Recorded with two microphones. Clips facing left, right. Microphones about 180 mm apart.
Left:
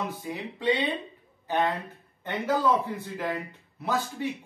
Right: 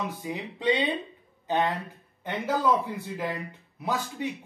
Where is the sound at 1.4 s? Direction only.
20° right (ahead or behind).